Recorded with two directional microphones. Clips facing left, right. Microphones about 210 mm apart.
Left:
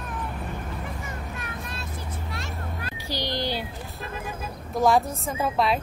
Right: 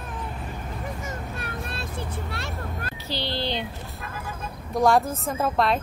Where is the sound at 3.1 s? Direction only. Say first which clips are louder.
Even; 15° left (ahead or behind).